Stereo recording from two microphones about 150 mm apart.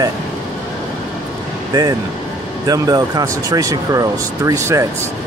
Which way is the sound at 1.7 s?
25° right (ahead or behind).